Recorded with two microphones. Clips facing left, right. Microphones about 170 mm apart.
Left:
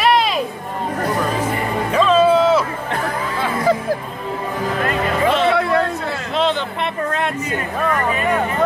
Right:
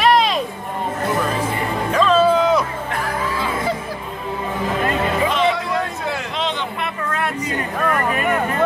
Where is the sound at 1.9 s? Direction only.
10° left (ahead or behind).